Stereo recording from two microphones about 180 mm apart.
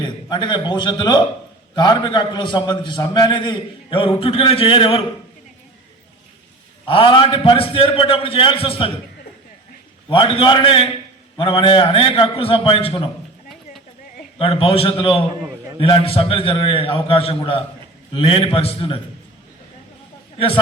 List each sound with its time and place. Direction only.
0.0 s a man's voice: 25° left (ahead or behind)
6.8 s a man's voice: 30° left (ahead or behind)
10.1 s a man's voice: 30° left (ahead or behind)
14.3 s a man's voice: 30° left (ahead or behind)